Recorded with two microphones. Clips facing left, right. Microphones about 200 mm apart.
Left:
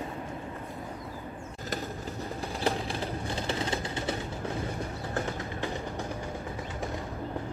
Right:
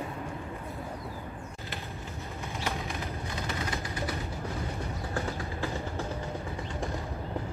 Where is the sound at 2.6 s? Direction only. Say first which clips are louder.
Left 5 dB; 30° left (ahead or behind).